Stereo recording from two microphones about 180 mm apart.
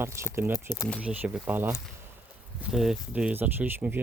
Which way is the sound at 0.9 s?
5° right (ahead or behind).